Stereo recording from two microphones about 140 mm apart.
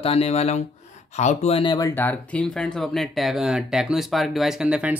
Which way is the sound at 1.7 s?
20° left (ahead or behind).